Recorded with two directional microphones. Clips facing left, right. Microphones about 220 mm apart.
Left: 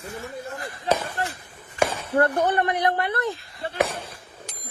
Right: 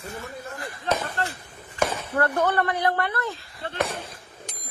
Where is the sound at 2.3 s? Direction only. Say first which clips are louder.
Left 1 dB; 15° left (ahead or behind).